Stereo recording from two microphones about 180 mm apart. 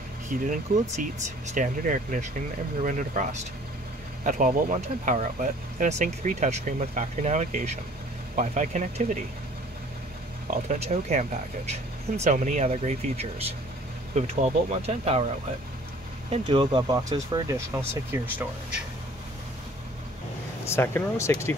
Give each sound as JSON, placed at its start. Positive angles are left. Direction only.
{"t": 0.3, "sound": "speech", "side_deg": -45}
{"t": 10.5, "sound": "speech", "side_deg": -40}
{"t": 16.3, "sound": "speech", "side_deg": -25}
{"t": 20.6, "sound": "speech", "side_deg": 15}